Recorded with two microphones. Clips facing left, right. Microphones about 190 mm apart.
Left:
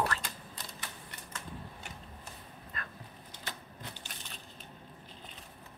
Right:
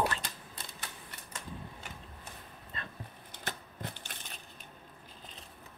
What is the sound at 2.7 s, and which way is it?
Dog, 25° right (ahead or behind).